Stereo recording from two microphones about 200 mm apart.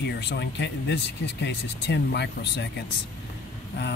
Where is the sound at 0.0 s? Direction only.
60° left (ahead or behind).